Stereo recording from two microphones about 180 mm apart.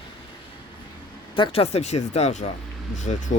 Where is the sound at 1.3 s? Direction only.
30° left (ahead or behind).